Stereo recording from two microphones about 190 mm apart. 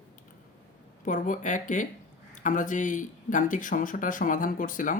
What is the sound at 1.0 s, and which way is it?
Speech, 45° left (ahead or behind).